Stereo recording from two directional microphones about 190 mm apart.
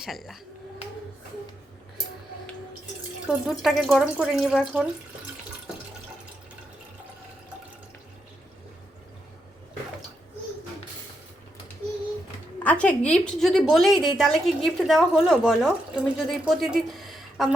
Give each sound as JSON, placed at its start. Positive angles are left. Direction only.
{"t": 0.0, "sound": "a woman's voice", "side_deg": 0}
{"t": 3.2, "sound": "a woman's voice", "side_deg": 0}
{"t": 12.6, "sound": "a woman's voice", "side_deg": 5}
{"t": 17.0, "sound": "a sound", "side_deg": 0}